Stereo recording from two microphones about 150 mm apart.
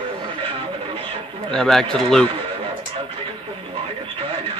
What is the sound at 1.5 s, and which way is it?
Speech, 5° left (ahead or behind).